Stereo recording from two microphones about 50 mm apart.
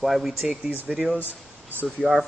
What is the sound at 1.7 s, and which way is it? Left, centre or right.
Speech, right.